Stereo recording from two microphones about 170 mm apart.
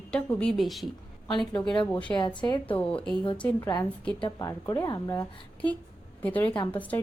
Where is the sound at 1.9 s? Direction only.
5° left (ahead or behind).